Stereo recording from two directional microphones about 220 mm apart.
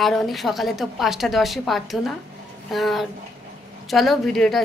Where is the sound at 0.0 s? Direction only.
Centre (ahead or behind).